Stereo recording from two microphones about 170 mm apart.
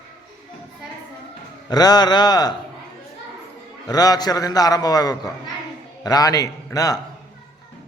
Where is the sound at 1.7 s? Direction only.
25° left (ahead or behind).